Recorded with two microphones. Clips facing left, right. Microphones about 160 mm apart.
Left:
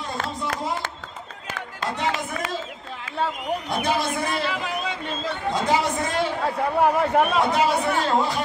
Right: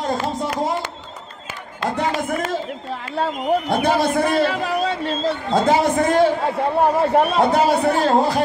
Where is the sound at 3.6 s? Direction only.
55° right (ahead or behind); by 5.3 s 35° right (ahead or behind).